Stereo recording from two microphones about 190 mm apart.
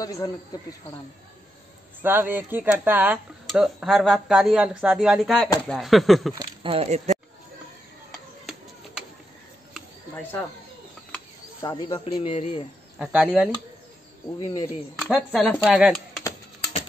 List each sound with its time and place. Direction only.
0.0 s speech: 20° left (ahead or behind)
2.0 s speech: 10° right (ahead or behind)
3.4 s speech: centre (ahead or behind)
6.3 s speech: 30° right (ahead or behind)
11.6 s speech: 25° left (ahead or behind)
13.0 s speech: 5° right (ahead or behind)
14.4 s speech: 20° left (ahead or behind)
15.0 s speech: centre (ahead or behind)